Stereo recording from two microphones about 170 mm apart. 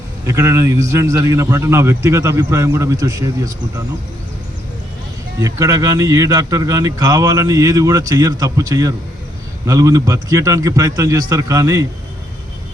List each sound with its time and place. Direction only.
0.3 s a man's voice: 15° right (ahead or behind)
5.4 s a man's voice: 20° right (ahead or behind)